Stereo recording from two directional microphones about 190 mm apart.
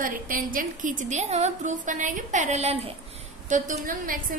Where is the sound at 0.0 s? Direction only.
45° right (ahead or behind).